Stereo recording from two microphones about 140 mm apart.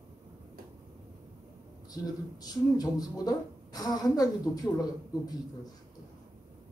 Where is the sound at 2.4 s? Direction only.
25° left (ahead or behind).